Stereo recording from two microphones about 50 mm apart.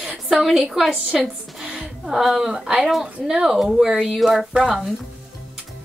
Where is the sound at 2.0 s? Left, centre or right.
Centre.